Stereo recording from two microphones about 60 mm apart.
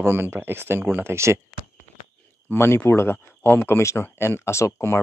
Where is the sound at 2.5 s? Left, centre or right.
Left.